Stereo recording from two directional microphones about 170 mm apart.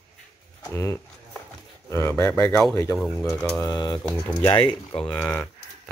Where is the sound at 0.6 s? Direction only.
20° left (ahead or behind).